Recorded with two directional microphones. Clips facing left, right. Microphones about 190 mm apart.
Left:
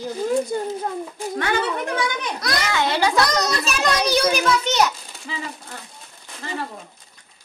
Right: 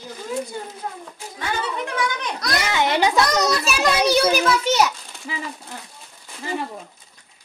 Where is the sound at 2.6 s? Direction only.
15° right (ahead or behind).